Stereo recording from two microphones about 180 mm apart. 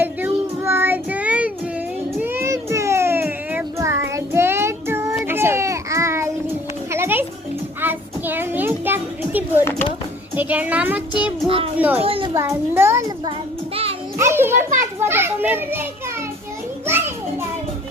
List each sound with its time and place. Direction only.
0.0 s child singing: 10° right (ahead or behind)
6.9 s music: 10° right (ahead or behind)
7.8 s a sound: 10° right (ahead or behind)
10.3 s a child's voice: 10° right (ahead or behind)
11.4 s a child's voice: 30° right (ahead or behind)
11.8 s a child's voice: 10° right (ahead or behind)
12.0 s a sound: 30° right (ahead or behind)
12.4 s a child's voice: 15° right (ahead or behind)
14.2 s a child's voice: 15° right (ahead or behind)
14.8 s children playing: 15° right (ahead or behind)